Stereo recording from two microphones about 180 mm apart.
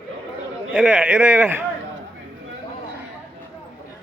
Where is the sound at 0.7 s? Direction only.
5° right (ahead or behind).